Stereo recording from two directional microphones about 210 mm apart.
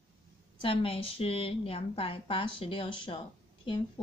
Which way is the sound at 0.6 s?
25° left (ahead or behind).